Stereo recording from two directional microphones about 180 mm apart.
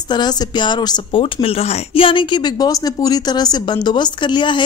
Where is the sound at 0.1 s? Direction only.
25° left (ahead or behind).